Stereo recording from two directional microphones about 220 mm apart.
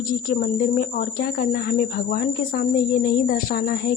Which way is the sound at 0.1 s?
40° left (ahead or behind).